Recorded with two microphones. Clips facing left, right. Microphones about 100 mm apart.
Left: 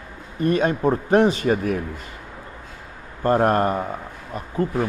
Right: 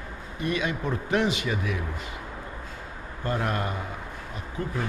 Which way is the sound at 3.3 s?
45° left (ahead or behind).